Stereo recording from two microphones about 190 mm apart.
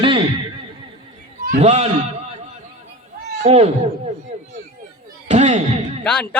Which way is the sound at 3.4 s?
30° right (ahead or behind).